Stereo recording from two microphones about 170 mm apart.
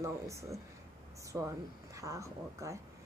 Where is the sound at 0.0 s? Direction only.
20° right (ahead or behind).